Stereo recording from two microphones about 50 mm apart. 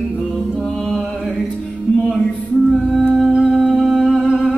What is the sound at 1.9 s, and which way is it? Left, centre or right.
Music, centre.